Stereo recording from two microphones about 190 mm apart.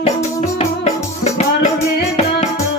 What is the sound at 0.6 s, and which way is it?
Music, 35° left (ahead or behind).